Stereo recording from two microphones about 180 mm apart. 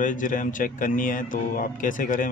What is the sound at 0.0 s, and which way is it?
Speech, 45° left (ahead or behind).